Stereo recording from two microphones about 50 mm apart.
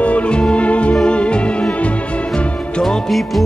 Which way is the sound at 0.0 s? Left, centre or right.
Left.